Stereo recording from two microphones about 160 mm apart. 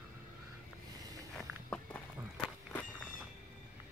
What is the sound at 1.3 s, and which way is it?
Walk, 10° left (ahead or behind).